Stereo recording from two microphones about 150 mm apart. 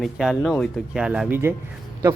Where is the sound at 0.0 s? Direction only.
Centre (ahead or behind).